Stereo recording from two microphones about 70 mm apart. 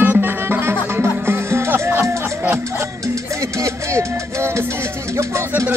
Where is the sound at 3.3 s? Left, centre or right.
Right.